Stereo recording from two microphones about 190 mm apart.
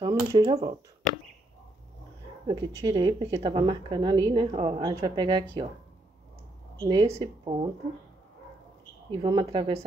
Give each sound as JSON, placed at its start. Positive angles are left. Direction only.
{"t": 0.0, "sound": "speech", "side_deg": -20}
{"t": 2.4, "sound": "speech", "side_deg": -25}
{"t": 6.8, "sound": "speech", "side_deg": -25}
{"t": 9.1, "sound": "speech", "side_deg": -25}